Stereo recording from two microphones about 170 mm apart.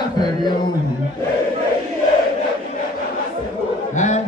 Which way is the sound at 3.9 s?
45° left (ahead or behind).